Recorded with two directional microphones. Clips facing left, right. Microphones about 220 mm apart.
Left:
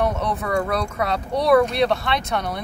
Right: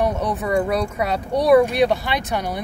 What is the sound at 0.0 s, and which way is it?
Speech, 15° right (ahead or behind).